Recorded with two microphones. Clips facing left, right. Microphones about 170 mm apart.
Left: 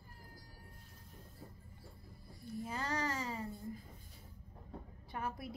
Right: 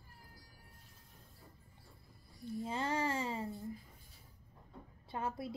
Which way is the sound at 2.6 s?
25° right (ahead or behind).